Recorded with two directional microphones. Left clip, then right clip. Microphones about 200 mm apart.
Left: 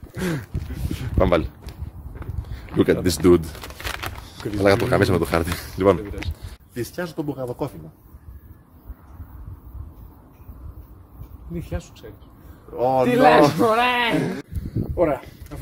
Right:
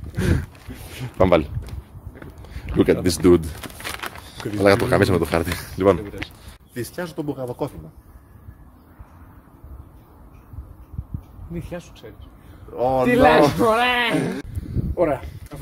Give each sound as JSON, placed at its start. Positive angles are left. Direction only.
{"t": 0.1, "sound": "a sound", "side_deg": -15}
{"t": 2.5, "sound": "speech", "side_deg": -15}
{"t": 4.0, "sound": "a sound", "side_deg": -10}
{"t": 4.4, "sound": "speech", "side_deg": -15}
{"t": 6.7, "sound": "speech", "side_deg": -20}
{"t": 11.5, "sound": "speech", "side_deg": 5}
{"t": 12.7, "sound": "speech", "side_deg": -20}
{"t": 13.1, "sound": "speech", "side_deg": 0}
{"t": 14.1, "sound": "speech", "side_deg": -35}
{"t": 15.0, "sound": "speech", "side_deg": 0}